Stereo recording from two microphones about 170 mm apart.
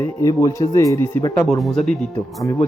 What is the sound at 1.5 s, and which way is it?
Speech, centre (ahead or behind).